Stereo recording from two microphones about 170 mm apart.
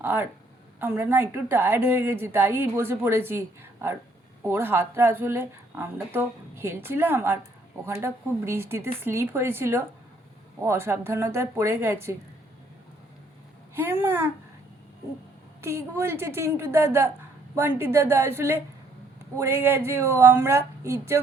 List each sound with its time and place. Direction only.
0.0 s a woman's voice: 15° right (ahead or behind)
13.7 s a woman's voice: 15° right (ahead or behind)
15.6 s a woman's voice: 15° right (ahead or behind)